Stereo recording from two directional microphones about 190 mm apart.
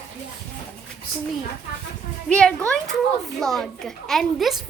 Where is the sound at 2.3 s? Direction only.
5° left (ahead or behind).